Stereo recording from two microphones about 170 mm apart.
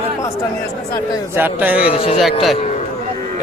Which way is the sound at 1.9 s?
35° left (ahead or behind).